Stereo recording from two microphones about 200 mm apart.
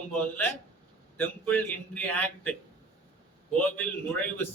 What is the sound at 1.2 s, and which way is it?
A man's voice, 5° left (ahead or behind).